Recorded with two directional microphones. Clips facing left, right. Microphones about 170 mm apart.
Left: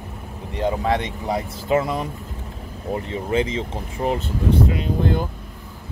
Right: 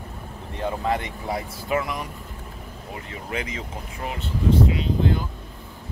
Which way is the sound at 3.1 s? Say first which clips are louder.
Left 8 dB; 30° left (ahead or behind).